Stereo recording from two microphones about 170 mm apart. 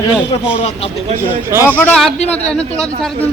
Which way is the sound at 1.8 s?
5° left (ahead or behind).